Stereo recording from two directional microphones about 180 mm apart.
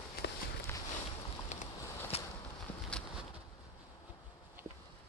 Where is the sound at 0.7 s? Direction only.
15° left (ahead or behind).